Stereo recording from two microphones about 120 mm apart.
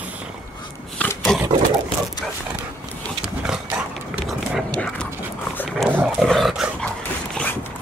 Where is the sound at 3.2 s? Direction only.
5° right (ahead or behind).